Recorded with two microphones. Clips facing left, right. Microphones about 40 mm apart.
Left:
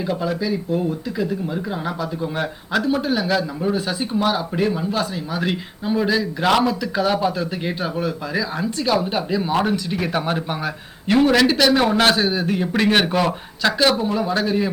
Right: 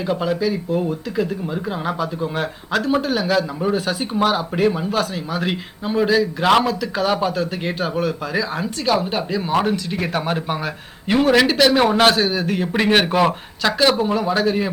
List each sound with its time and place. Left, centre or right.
0.3 s a man's voice: centre
2.2 s a man's voice: centre
4.2 s a man's voice: right
6.9 s a man's voice: centre
12.2 s speech: centre
12.5 s a man's voice: centre